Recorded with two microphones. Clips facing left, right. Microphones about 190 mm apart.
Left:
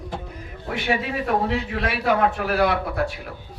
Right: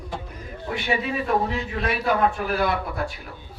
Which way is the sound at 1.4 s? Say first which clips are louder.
Left 2 dB; 70° left (ahead or behind).